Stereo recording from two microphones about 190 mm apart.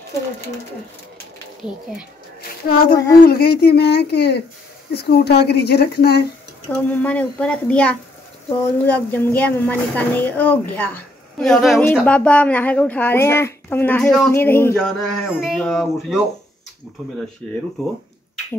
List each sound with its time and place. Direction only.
2.9 s speech: 55° left (ahead or behind)
6.7 s speech: 10° left (ahead or behind)
17.4 s speech: 5° left (ahead or behind)